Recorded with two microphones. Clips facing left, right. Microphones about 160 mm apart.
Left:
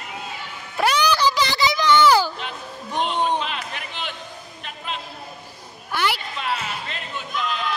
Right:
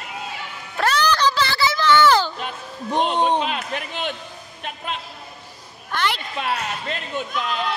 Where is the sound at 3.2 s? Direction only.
45° right (ahead or behind).